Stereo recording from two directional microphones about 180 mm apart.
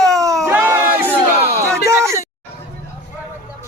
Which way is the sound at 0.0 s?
20° right (ahead or behind).